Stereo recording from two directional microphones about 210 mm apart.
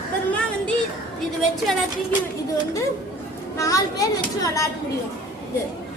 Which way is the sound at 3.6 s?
15° left (ahead or behind).